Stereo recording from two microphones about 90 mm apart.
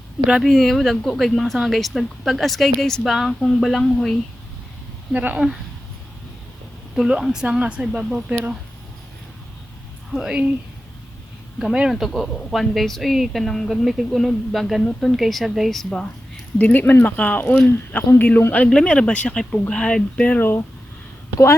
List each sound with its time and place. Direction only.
0.3 s speech: centre (ahead or behind)
5.1 s speech: 15° right (ahead or behind)
6.9 s speech: 5° right (ahead or behind)
10.2 s speech: 10° right (ahead or behind)
11.6 s speech: 5° right (ahead or behind)
16.6 s speech: 20° left (ahead or behind)